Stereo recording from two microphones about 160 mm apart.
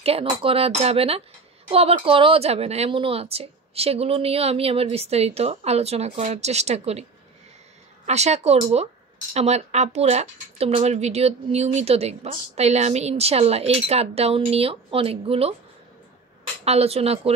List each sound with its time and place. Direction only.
0.0 s speech: 35° right (ahead or behind)
8.1 s speech: 45° right (ahead or behind)
16.6 s speech: 40° right (ahead or behind)